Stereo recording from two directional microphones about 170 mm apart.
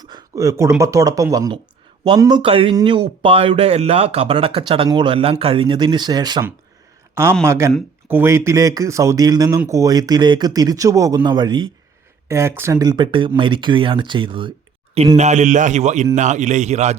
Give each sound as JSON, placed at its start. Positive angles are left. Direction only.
{"t": 0.0, "sound": "speech", "side_deg": -20}
{"t": 12.8, "sound": "speech", "side_deg": -25}
{"t": 15.1, "sound": "a man's voice", "side_deg": -45}